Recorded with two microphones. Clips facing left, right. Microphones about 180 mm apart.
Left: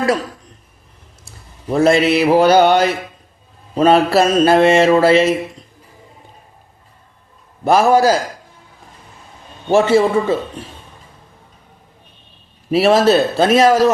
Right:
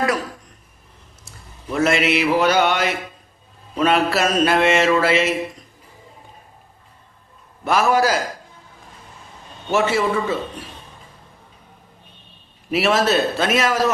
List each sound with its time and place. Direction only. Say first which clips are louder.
1.7 s mantra: left 6 dB; 35° left (ahead or behind)
7.6 s mantra: left 6 dB; 30° left (ahead or behind)
9.7 s a man's voice: left 7 dB; 30° left (ahead or behind)
12.7 s mantra: left 6 dB; 30° left (ahead or behind)